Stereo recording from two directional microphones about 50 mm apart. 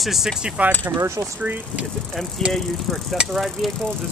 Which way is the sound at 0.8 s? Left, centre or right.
Right.